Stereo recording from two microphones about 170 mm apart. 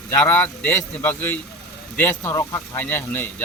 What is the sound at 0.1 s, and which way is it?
Speech, 10° left (ahead or behind).